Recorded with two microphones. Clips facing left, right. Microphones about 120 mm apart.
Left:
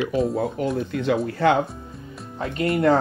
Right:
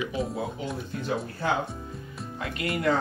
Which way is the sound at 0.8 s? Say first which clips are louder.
Left 8 dB; 85° left.